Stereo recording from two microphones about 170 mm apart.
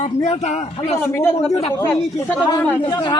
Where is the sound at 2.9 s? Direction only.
25° left (ahead or behind).